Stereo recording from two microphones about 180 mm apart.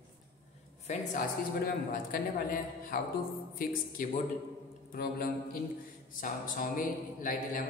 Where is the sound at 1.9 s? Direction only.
55° left (ahead or behind).